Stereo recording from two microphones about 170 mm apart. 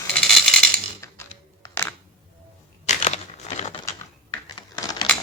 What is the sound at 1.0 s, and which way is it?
Typing, 15° left (ahead or behind).